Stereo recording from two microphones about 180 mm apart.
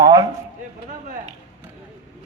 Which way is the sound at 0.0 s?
20° right (ahead or behind).